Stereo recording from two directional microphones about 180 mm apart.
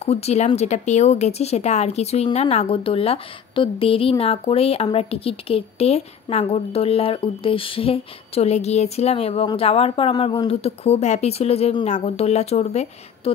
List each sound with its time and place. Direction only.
0.0 s speech: 35° left (ahead or behind)